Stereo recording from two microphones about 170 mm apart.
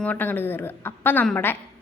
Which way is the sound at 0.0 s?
10° left (ahead or behind).